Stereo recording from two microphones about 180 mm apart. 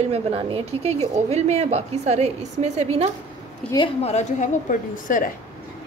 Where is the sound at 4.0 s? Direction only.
40° left (ahead or behind).